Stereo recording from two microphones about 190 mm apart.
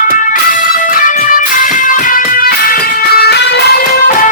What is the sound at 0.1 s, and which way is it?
Music, 45° left (ahead or behind).